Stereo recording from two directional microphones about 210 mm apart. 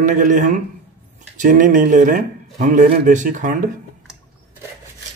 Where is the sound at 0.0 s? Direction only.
40° right (ahead or behind).